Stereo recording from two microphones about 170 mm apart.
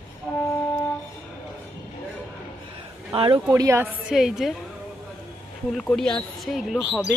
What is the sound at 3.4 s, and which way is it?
Speech, 15° right (ahead or behind).